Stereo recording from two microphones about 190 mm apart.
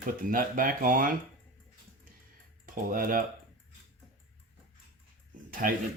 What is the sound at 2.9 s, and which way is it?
Speech, 50° right (ahead or behind).